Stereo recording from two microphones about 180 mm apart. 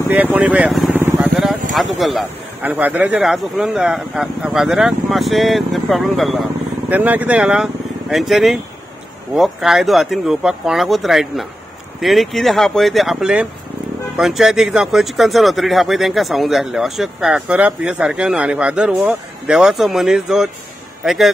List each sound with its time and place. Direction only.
0.1 s speech: 10° right (ahead or behind)
0.9 s vehicle: 10° right (ahead or behind)
1.3 s a man's voice: centre (ahead or behind)